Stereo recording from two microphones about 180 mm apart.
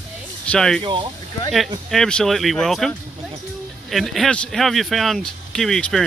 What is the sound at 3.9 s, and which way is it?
Speech, centre (ahead or behind).